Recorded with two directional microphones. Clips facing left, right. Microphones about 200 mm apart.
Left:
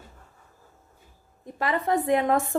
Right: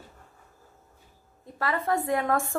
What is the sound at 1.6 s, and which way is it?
Speech, 20° left (ahead or behind).